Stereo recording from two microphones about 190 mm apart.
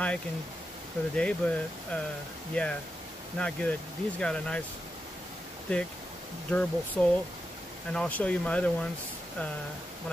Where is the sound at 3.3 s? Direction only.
5° left (ahead or behind).